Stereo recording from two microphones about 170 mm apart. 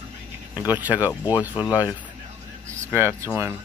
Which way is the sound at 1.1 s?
20° left (ahead or behind).